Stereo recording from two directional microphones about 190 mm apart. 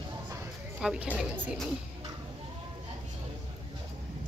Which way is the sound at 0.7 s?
5° right (ahead or behind).